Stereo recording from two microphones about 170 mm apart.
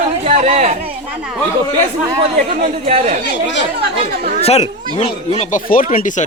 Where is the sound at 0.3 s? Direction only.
40° right (ahead or behind).